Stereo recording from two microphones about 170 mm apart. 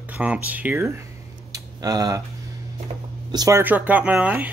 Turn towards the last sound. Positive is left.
turn(degrees=-10)  # may be behind; listen again after turning